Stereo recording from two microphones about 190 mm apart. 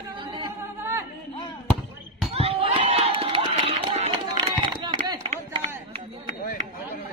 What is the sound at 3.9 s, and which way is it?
Run, 30° right (ahead or behind).